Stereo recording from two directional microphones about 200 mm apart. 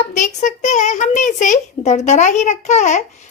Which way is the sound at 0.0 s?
35° left (ahead or behind).